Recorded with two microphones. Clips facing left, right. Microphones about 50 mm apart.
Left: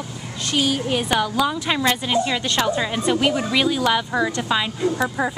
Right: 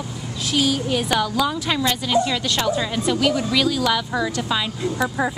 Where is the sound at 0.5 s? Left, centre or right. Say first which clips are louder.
Even; centre.